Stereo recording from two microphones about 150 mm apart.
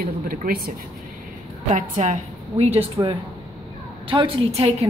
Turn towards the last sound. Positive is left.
turn(degrees=-35)  # may be behind; listen again after turning